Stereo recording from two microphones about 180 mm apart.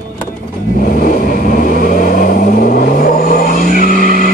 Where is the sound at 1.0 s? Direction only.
50° left (ahead or behind).